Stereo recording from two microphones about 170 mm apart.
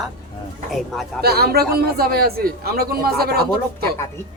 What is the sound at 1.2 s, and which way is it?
A man's voice, 65° right (ahead or behind).